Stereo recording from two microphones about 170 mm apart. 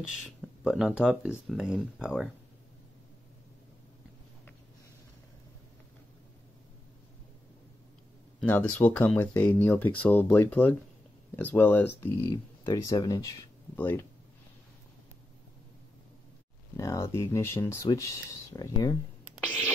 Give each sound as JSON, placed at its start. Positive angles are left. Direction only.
{"t": 0.0, "sound": "speech", "side_deg": -5}
{"t": 8.4, "sound": "speech", "side_deg": 10}
{"t": 12.2, "sound": "speech", "side_deg": 25}
{"t": 16.7, "sound": "speech", "side_deg": 20}